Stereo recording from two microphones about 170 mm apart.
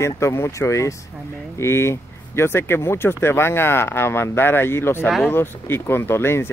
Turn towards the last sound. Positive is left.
turn(degrees=15)  # may be behind; listen again after turning